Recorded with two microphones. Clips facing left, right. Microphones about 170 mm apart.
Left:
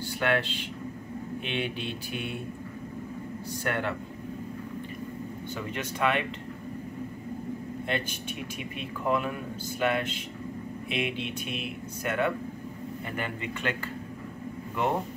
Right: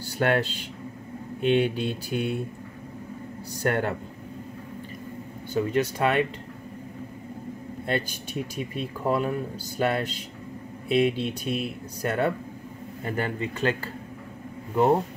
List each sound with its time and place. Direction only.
0.2 s speech: 40° right (ahead or behind)
3.6 s speech: 40° right (ahead or behind)
5.5 s speech: 35° right (ahead or behind)
7.8 s speech: 35° right (ahead or behind)